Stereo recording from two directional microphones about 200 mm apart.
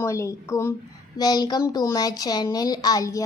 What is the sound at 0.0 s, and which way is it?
A woman's voice, 15° left (ahead or behind).